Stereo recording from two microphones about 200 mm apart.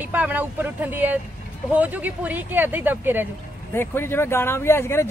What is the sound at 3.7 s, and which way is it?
Speech, 10° left (ahead or behind).